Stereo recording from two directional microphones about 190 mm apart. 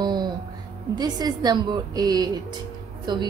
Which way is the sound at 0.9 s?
20° right (ahead or behind).